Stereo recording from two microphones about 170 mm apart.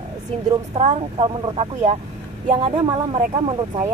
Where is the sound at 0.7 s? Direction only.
35° right (ahead or behind).